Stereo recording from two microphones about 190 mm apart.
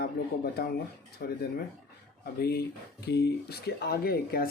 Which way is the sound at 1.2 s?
55° left (ahead or behind).